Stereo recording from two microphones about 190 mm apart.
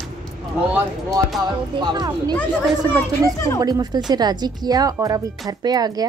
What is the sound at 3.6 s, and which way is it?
Speech, 20° right (ahead or behind).